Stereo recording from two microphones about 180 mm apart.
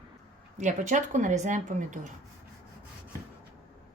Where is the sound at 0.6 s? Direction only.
45° right (ahead or behind).